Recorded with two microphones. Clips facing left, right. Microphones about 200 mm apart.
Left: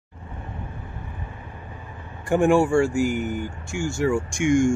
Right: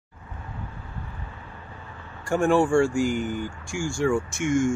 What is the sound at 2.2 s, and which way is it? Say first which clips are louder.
Speech: left 3 dB; 15° left (ahead or behind).